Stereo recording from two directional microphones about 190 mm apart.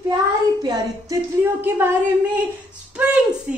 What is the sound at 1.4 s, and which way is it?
A woman's voice, 10° right (ahead or behind).